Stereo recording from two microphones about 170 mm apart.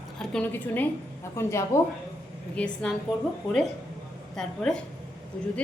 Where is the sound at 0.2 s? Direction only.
5° left (ahead or behind).